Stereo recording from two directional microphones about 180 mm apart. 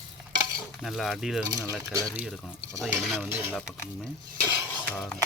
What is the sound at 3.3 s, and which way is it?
Speech, 10° right (ahead or behind).